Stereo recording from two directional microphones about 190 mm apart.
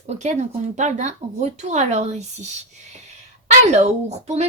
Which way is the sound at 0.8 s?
40° right (ahead or behind).